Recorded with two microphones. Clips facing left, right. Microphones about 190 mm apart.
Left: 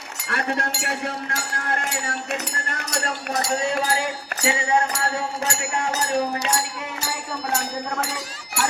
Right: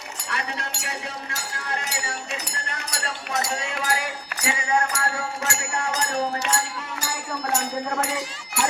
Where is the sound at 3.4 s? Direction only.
30° left (ahead or behind).